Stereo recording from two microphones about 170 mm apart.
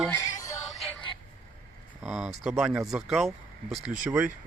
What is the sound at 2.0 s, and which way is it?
Speech, centre (ahead or behind).